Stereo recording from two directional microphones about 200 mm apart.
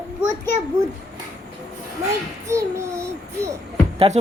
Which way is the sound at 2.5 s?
15° right (ahead or behind).